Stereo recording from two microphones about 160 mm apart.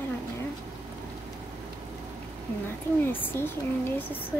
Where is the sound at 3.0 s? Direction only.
15° left (ahead or behind).